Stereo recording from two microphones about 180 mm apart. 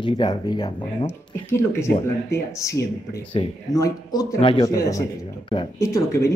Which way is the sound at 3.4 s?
35° left (ahead or behind).